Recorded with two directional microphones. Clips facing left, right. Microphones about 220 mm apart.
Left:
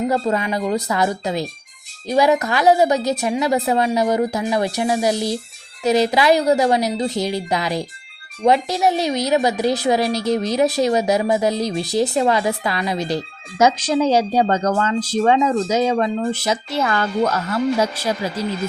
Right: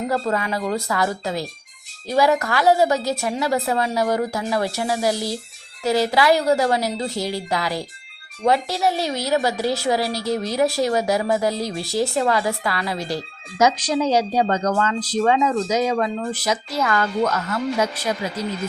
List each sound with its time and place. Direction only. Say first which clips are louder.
0.1 s a woman's voice: left 3 dB; 20° left (ahead or behind)